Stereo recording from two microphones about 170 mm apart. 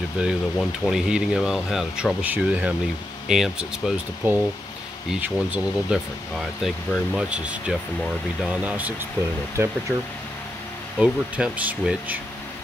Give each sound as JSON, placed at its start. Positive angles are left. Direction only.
{"t": 0.2, "sound": "speech", "side_deg": 0}
{"t": 11.0, "sound": "speech", "side_deg": -5}